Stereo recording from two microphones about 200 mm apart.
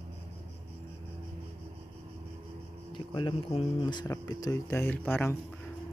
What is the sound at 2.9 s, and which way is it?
Speech, 25° left (ahead or behind).